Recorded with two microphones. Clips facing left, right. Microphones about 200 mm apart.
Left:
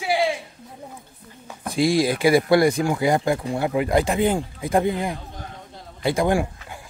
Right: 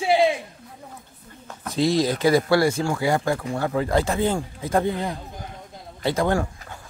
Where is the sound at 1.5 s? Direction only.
10° left (ahead or behind).